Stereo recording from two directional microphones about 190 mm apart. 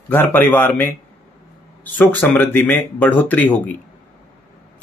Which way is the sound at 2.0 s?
10° left (ahead or behind).